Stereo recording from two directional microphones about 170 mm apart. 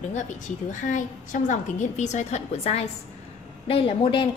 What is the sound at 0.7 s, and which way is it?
A woman's voice, 45° left (ahead or behind).